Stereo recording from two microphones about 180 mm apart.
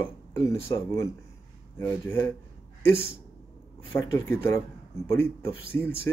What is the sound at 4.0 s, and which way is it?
Speech, 15° left (ahead or behind).